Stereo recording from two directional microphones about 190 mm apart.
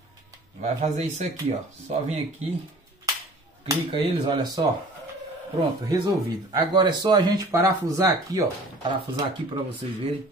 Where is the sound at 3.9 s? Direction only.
20° right (ahead or behind).